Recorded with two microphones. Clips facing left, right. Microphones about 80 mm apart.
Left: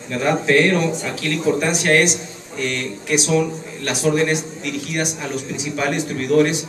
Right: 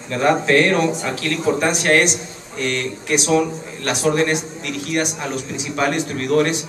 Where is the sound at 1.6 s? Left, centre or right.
Centre.